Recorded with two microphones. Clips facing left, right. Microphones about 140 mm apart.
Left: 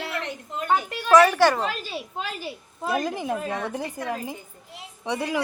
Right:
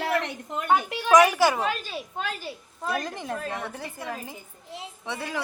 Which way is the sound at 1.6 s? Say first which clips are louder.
Right 1 dB; 5° left (ahead or behind).